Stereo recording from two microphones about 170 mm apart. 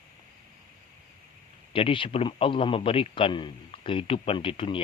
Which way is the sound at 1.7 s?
30° left (ahead or behind).